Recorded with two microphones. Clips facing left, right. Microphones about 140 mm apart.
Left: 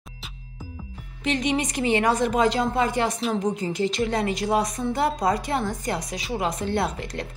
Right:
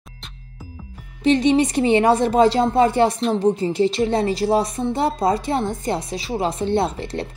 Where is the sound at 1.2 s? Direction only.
30° right (ahead or behind).